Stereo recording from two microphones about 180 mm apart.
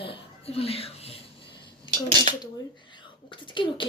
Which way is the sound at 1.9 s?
25° left (ahead or behind).